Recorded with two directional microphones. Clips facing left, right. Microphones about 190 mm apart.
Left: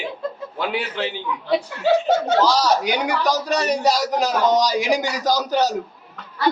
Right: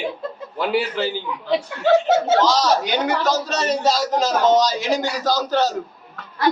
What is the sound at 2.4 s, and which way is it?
A man's voice, 10° left (ahead or behind).